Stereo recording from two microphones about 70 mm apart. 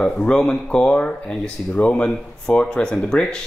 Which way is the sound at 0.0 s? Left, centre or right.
Centre.